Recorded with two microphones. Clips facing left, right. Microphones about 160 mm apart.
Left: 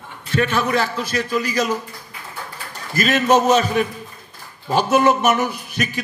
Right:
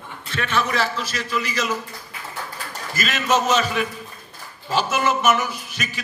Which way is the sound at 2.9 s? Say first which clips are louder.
Left 6 dB; 50° left (ahead or behind).